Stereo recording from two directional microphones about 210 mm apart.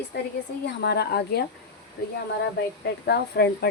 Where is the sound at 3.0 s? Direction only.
50° left (ahead or behind).